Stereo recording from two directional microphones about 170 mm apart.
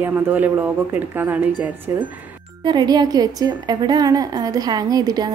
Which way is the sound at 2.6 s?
25° right (ahead or behind).